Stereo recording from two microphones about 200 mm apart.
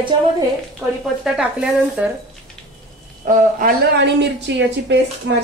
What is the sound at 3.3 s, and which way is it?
A woman's voice, 45° right (ahead or behind).